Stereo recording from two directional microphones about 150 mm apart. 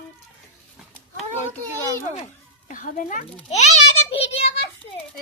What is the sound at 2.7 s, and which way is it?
Speech, 60° left (ahead or behind).